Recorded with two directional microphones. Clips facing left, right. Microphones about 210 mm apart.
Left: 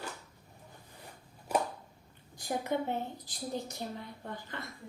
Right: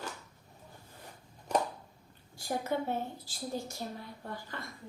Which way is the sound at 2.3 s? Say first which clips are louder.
Even; 20° left (ahead or behind).